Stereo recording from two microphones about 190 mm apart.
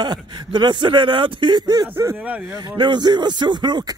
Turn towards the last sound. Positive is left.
turn(degrees=-25)  # may be behind; listen again after turning